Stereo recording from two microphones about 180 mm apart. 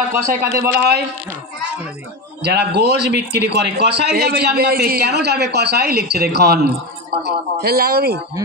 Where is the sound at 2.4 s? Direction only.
65° right (ahead or behind).